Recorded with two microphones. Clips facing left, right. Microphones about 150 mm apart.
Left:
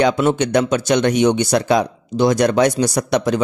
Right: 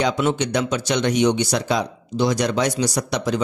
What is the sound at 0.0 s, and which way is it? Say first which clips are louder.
A man's voice: left 5 dB; 55° left (ahead or behind).